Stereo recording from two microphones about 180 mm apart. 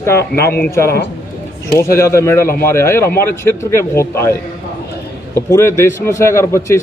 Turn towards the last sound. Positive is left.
turn(degrees=15)  # may be behind; listen again after turning